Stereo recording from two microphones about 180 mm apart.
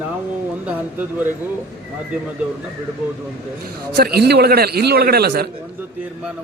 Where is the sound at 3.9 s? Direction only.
60° right (ahead or behind).